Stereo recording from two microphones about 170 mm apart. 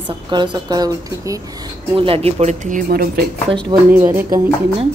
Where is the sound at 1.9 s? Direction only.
35° right (ahead or behind).